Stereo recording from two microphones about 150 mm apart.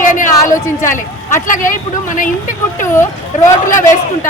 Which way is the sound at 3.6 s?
60° left (ahead or behind).